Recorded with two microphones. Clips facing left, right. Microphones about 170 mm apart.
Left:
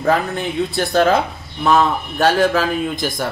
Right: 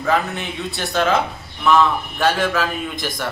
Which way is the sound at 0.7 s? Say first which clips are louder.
Left 3 dB; 35° left (ahead or behind).